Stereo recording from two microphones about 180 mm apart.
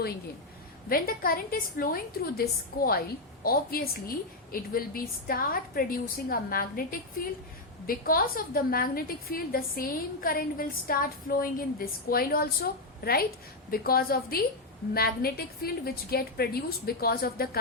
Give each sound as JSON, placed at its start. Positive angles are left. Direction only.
{"t": 0.9, "sound": "a woman's voice", "side_deg": 55}